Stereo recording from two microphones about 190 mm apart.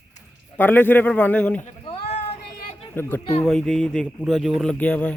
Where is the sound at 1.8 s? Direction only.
30° left (ahead or behind).